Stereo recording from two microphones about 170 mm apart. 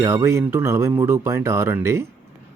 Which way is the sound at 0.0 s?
15° right (ahead or behind).